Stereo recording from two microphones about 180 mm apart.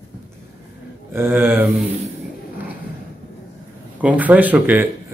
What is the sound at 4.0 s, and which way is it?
Speech, 10° right (ahead or behind).